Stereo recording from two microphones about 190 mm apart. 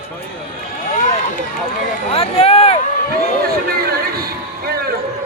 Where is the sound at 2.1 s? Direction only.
30° left (ahead or behind).